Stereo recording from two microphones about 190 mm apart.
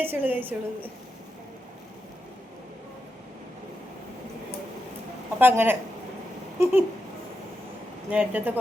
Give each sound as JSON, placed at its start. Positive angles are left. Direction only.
{"t": 0.0, "sound": "a woman's voice", "side_deg": -10}
{"t": 5.4, "sound": "a woman's voice", "side_deg": -10}
{"t": 8.1, "sound": "a woman's voice", "side_deg": -10}